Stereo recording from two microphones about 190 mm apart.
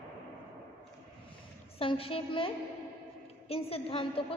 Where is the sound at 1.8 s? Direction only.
30° left (ahead or behind).